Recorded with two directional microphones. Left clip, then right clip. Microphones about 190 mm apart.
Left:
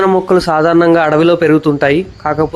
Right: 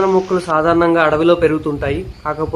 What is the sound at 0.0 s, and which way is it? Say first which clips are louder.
A man's voice: left 4 dB; 40° left (ahead or behind).